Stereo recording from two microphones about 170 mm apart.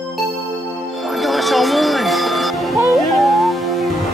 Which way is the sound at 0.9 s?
Centre (ahead or behind).